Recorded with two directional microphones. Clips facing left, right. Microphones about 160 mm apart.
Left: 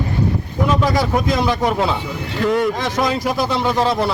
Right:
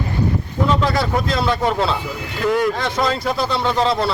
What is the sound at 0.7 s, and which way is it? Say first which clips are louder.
Speech: left 2 dB; 15° left (ahead or behind).